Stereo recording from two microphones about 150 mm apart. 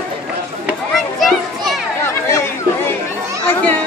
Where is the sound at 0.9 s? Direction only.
Centre (ahead or behind).